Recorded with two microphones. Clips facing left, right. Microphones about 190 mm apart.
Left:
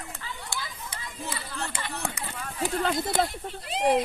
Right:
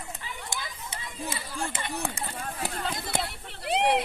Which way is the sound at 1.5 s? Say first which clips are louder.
Right 4 dB; 15° right (ahead or behind).